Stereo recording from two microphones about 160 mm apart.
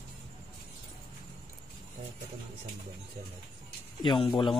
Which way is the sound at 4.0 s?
30° left (ahead or behind).